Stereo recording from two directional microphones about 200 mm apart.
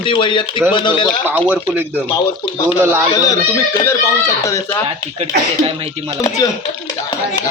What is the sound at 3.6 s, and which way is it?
Speech, 15° left (ahead or behind).